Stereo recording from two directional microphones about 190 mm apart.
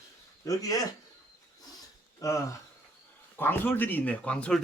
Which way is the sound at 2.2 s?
15° left (ahead or behind).